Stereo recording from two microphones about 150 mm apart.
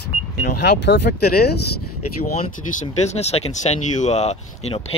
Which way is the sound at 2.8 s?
45° left (ahead or behind).